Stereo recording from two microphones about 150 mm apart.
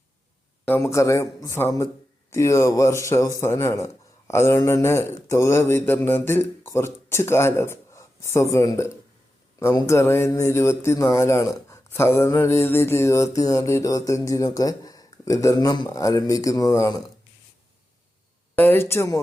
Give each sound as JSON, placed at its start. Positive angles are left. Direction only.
{"t": 0.7, "sound": "speech", "side_deg": 20}
{"t": 18.5, "sound": "speech", "side_deg": 15}